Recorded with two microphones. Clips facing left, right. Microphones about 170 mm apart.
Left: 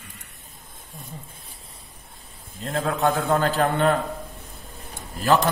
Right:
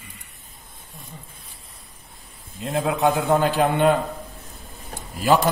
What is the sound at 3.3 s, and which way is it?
Speech, 15° right (ahead or behind).